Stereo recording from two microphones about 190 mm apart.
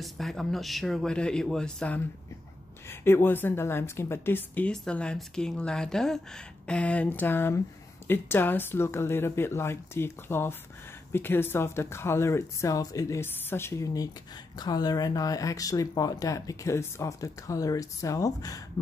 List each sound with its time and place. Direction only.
0.0 s a man's voice: centre (ahead or behind); by 18.6 s 20° left (ahead or behind)